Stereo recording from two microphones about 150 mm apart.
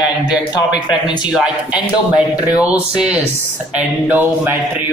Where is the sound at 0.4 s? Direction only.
30° left (ahead or behind).